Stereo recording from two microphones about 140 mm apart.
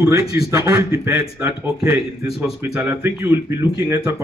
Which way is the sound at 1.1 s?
10° right (ahead or behind).